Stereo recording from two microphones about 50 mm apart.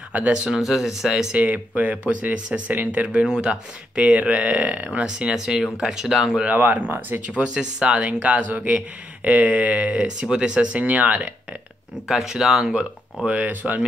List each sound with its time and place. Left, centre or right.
0.5 s speech: centre
1.3 s speech: right; by 6.4 s centre
6.4 s speech: right
7.2 s speech: right
12.1 s speech: centre
12.7 s speech: right